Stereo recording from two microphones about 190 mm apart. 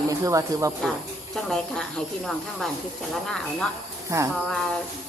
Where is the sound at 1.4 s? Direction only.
Centre (ahead or behind).